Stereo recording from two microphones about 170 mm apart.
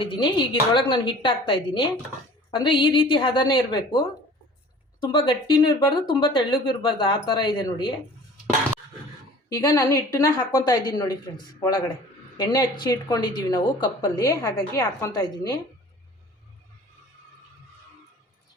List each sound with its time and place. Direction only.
0.0 s speech: 30° left (ahead or behind)
9.5 s speech: 20° left (ahead or behind)